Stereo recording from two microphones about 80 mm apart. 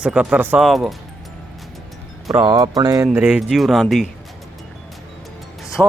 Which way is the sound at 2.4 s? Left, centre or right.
Right.